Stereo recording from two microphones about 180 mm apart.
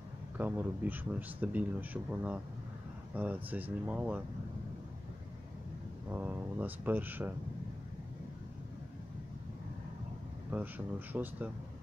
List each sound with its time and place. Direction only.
0.4 s speech: 10° right (ahead or behind)
6.1 s speech: 10° right (ahead or behind)
10.5 s speech: 10° right (ahead or behind)